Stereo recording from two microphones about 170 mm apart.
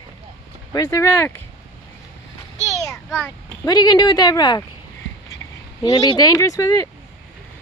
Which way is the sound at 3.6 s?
25° left (ahead or behind).